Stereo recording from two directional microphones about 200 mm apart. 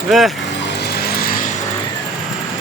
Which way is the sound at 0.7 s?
55° left (ahead or behind).